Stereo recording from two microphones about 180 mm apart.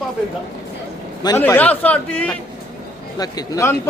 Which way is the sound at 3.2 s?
20° left (ahead or behind).